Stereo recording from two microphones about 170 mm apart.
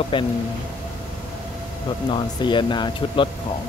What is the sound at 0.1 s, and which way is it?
Speech, 30° left (ahead or behind).